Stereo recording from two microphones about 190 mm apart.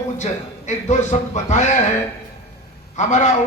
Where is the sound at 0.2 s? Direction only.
35° left (ahead or behind).